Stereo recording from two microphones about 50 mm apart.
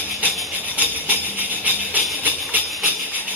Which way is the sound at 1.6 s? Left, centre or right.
Right.